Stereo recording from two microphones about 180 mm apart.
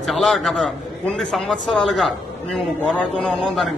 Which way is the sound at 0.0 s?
Centre (ahead or behind).